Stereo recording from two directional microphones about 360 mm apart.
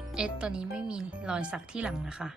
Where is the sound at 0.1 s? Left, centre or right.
Centre.